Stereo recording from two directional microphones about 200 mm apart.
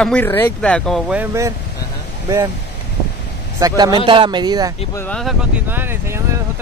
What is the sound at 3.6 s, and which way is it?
Speech, 20° right (ahead or behind).